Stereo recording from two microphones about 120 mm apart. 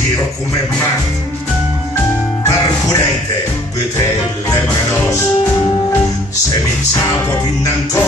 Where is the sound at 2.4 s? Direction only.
30° left (ahead or behind).